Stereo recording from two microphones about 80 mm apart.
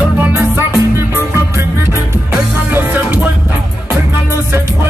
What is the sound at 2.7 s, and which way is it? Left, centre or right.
Music, right.